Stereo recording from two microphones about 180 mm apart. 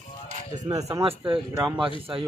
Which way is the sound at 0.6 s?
20° right (ahead or behind).